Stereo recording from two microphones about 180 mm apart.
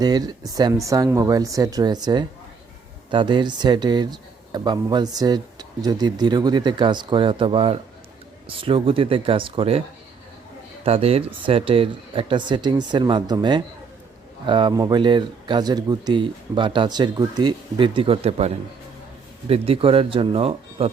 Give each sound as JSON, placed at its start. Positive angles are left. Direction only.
{"t": 0.0, "sound": "speech", "side_deg": -20}
{"t": 10.8, "sound": "speech", "side_deg": -35}